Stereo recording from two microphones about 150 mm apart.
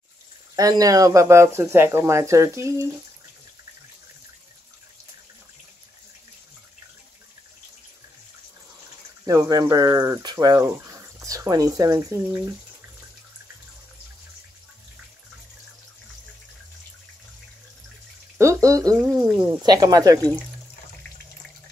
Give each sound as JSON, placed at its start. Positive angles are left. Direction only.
{"t": 0.6, "sound": "speech", "side_deg": -25}
{"t": 9.2, "sound": "speech", "side_deg": -25}
{"t": 18.4, "sound": "speech", "side_deg": -20}